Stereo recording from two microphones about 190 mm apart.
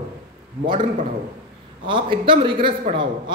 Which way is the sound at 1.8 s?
25° right (ahead or behind).